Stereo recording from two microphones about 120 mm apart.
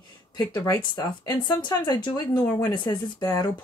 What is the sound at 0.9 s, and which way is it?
Speech, 35° left (ahead or behind).